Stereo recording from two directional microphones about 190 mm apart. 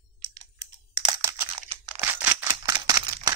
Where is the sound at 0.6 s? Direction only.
20° right (ahead or behind).